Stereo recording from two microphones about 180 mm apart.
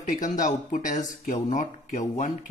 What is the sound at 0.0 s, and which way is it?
Speech, 45° left (ahead or behind).